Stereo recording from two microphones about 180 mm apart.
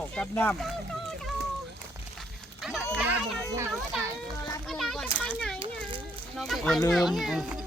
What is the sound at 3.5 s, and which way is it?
Children playing, 15° right (ahead or behind).